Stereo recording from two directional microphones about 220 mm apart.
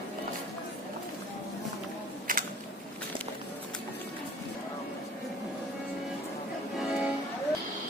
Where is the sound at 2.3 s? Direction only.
40° right (ahead or behind).